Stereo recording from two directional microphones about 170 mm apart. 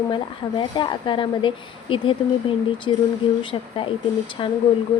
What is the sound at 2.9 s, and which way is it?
Speech, 30° left (ahead or behind).